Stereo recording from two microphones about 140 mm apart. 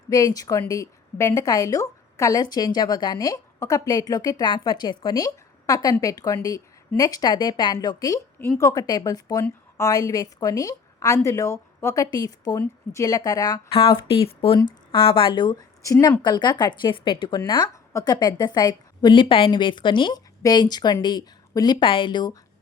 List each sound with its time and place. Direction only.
0.1 s a woman's voice: 25° left (ahead or behind)
13.7 s a woman's voice: 40° left (ahead or behind)